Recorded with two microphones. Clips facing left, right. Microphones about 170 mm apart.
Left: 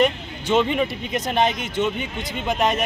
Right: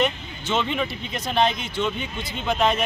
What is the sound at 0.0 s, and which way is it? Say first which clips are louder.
Speech: left 4 dB; 10° left (ahead or behind).